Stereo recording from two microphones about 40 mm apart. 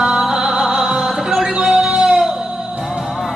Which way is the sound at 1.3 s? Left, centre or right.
Centre.